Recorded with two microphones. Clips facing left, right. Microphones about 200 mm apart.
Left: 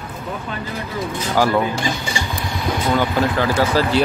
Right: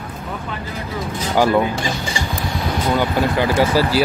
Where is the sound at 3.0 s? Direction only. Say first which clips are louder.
Right 1 dB; 15° right (ahead or behind).